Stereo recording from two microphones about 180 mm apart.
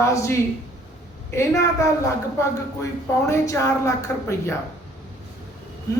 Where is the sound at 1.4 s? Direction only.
15° left (ahead or behind).